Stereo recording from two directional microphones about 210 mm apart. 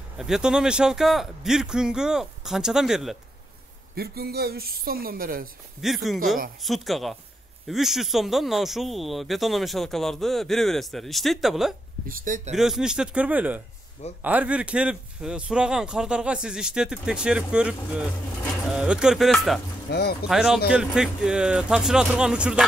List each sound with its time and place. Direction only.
0.2 s speech: 5° right (ahead or behind)
3.9 s speech: 45° right (ahead or behind)
5.8 s speech: centre (ahead or behind)
12.1 s speech: 40° right (ahead or behind)
12.5 s speech: centre (ahead or behind)
19.9 s speech: 50° left (ahead or behind)
20.2 s speech: centre (ahead or behind)